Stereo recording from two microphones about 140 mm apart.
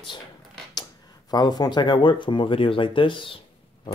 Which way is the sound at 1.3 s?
30° left (ahead or behind).